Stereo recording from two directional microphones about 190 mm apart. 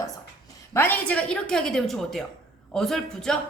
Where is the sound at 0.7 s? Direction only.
10° left (ahead or behind).